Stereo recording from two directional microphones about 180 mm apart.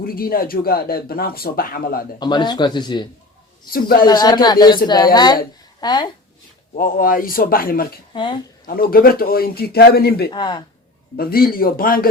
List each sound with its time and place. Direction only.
0.0 s speech: 55° left (ahead or behind)
2.1 s speech: 25° left (ahead or behind)
3.7 s speech: 55° left (ahead or behind)
4.0 s speech: 25° left (ahead or behind)
6.7 s speech: 50° left (ahead or behind)
8.1 s speech: 25° left (ahead or behind)
8.6 s speech: 55° left (ahead or behind)
10.3 s speech: 25° left (ahead or behind)
11.2 s speech: 55° left (ahead or behind)